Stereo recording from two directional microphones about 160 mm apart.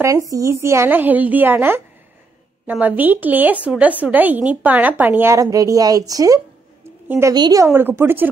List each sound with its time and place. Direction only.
0.0 s a woman's voice: 20° right (ahead or behind)